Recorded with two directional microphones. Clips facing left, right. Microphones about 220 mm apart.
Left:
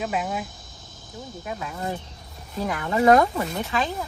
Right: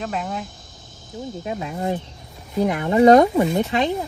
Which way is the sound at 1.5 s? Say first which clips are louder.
Right 5 dB; 25° right (ahead or behind).